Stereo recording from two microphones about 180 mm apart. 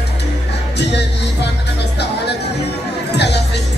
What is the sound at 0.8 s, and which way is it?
Music, 70° left (ahead or behind).